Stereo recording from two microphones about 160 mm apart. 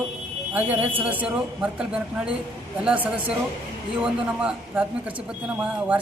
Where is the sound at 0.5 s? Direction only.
10° right (ahead or behind).